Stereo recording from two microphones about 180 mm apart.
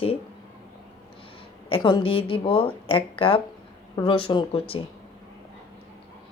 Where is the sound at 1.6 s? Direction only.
30° left (ahead or behind).